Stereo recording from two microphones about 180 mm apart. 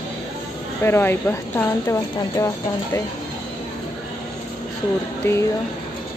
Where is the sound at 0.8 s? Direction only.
15° left (ahead or behind).